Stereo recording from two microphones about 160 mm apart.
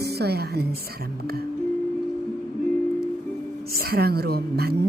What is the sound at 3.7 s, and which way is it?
A woman's voice, 70° right (ahead or behind).